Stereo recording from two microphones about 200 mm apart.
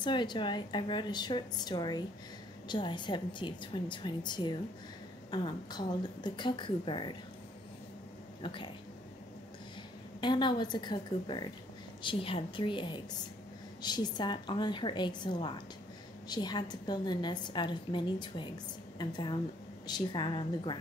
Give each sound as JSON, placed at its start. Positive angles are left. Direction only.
{"t": 0.0, "sound": "a woman's voice", "side_deg": 20}
{"t": 8.4, "sound": "a woman's voice", "side_deg": 25}
{"t": 10.2, "sound": "a woman's voice", "side_deg": 20}